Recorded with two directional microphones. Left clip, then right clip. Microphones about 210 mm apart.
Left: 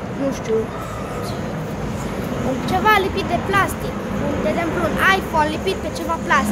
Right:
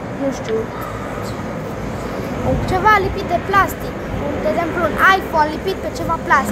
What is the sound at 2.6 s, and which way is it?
Speech, 5° left (ahead or behind).